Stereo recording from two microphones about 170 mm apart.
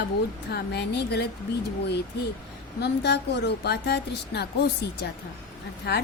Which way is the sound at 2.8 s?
80° left.